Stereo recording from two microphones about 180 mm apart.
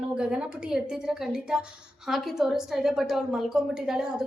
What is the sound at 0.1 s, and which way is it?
A woman's voice, 5° right (ahead or behind).